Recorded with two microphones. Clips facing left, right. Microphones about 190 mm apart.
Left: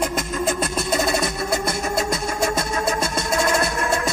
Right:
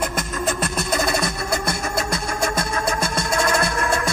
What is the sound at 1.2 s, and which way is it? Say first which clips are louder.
Music: left 1 dB; 20° left (ahead or behind).